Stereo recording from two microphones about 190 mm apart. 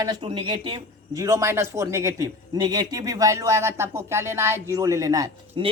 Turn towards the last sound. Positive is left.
turn(degrees=-20)  # may be behind; listen again after turning